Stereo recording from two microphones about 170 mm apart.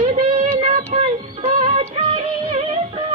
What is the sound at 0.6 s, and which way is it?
Music, 35° right (ahead or behind).